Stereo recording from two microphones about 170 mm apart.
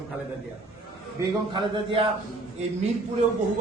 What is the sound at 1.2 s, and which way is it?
Speech, 25° right (ahead or behind).